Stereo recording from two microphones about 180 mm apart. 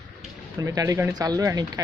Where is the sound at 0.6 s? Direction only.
20° right (ahead or behind).